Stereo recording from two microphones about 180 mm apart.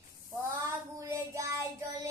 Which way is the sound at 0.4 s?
15° right (ahead or behind).